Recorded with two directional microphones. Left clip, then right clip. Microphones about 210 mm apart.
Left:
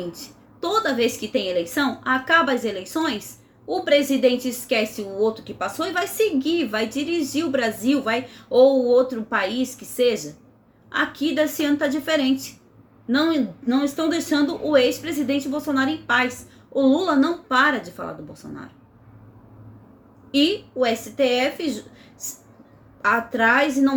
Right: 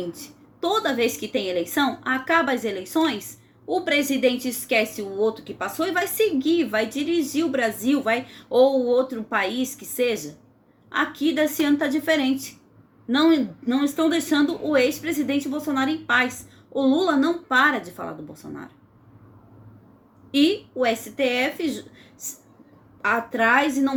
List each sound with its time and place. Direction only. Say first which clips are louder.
0.6 s a woman's voice: left 1 dB; 20° right (ahead or behind)
20.3 s a woman's voice: even; 20° right (ahead or behind)
23.0 s a woman's voice: left 2 dB; 20° right (ahead or behind)